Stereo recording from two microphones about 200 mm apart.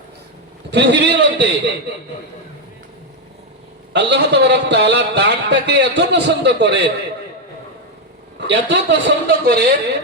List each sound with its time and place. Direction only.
0.7 s a man's voice: 60° right (ahead or behind)
3.9 s a man's voice: 60° right (ahead or behind)
8.4 s a man's voice: 60° right (ahead or behind)